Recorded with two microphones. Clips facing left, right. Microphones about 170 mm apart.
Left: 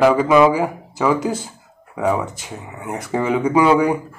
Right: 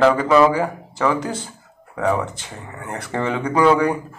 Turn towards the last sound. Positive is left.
turn(degrees=10)  # may be behind; listen again after turning